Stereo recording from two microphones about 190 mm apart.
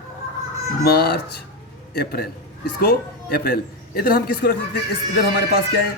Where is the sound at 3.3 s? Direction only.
55° left (ahead or behind).